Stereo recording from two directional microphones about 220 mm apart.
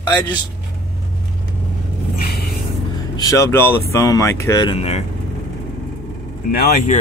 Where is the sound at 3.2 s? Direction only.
15° left (ahead or behind).